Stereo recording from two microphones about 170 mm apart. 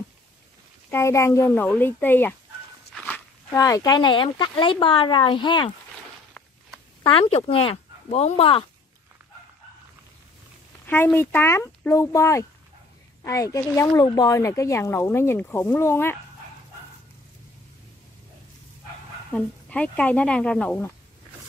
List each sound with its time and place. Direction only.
0.8 s speech: 15° left (ahead or behind)
3.5 s speech: 20° left (ahead or behind)
7.0 s speech: 30° left (ahead or behind)
11.1 s speech: 15° left (ahead or behind)
19.3 s speech: 5° left (ahead or behind)